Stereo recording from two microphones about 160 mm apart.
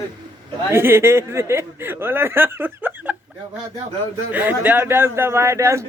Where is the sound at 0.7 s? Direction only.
15° right (ahead or behind).